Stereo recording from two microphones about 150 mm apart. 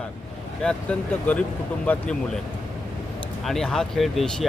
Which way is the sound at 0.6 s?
5° left (ahead or behind).